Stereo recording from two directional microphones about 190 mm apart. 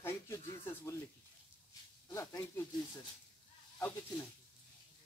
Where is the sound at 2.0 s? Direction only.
15° left (ahead or behind).